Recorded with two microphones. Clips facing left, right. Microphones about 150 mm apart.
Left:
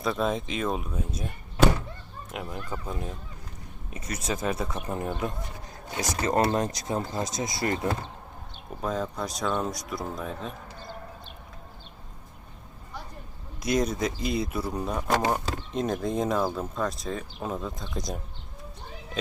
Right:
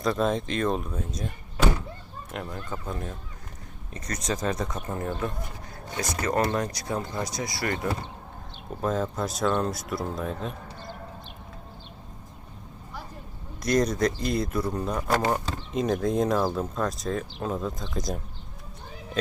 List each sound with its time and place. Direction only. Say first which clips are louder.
0.0 s speech: right 2 dB; centre (ahead or behind)
2.3 s speech: even; 10° left (ahead or behind)
4.9 s speech: left 1 dB; 15° left (ahead or behind)
8.8 s speech: right 3 dB; centre (ahead or behind)
13.6 s speech: right 3 dB; 5° left (ahead or behind)